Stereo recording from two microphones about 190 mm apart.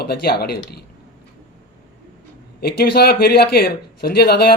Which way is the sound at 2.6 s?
55° left (ahead or behind).